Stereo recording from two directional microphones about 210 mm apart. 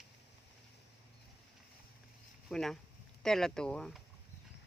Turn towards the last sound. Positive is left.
turn(degrees=5)  # may be behind; listen again after turning